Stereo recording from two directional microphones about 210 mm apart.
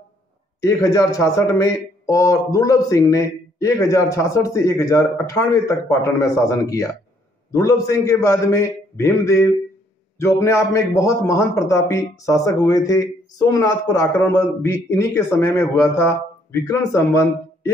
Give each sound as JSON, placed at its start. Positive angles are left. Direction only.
{"t": 0.6, "sound": "a man's voice", "side_deg": 15}